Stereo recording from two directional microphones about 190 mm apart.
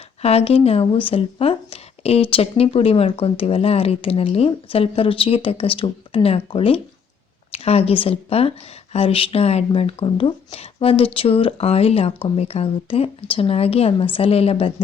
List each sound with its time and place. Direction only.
0.2 s speech: 30° left (ahead or behind)